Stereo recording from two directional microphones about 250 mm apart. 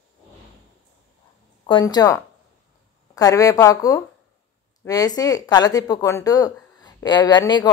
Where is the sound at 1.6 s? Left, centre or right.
Centre.